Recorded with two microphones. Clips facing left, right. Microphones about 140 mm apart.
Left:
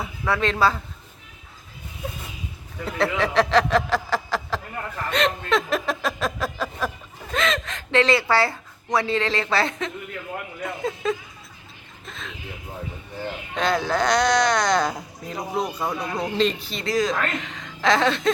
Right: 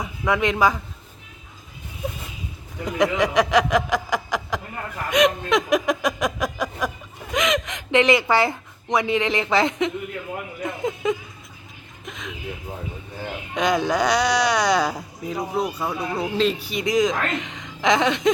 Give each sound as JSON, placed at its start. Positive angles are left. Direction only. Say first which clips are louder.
{"t": 0.0, "sound": "speech", "louder": "right 2 dB", "side_deg": -15}
{"t": 2.8, "sound": "a sound", "louder": "right 3 dB", "side_deg": -15}
{"t": 13.5, "sound": "speech", "louder": "right 2 dB", "side_deg": -15}